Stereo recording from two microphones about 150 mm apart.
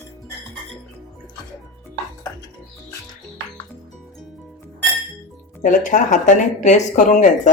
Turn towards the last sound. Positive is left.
turn(degrees=60)  # may be behind; listen again after turning